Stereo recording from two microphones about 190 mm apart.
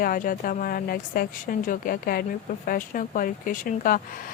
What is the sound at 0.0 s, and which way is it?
Speech, 50° left (ahead or behind).